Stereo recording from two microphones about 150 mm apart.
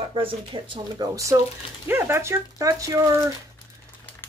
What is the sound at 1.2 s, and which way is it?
Speech, 20° right (ahead or behind).